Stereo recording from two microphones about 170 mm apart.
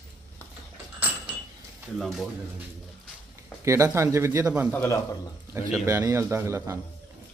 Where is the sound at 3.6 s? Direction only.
15° right (ahead or behind).